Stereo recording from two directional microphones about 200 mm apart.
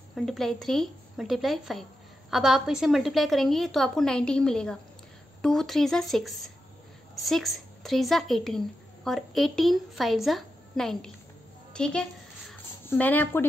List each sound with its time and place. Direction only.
0.1 s a woman's voice: centre (ahead or behind)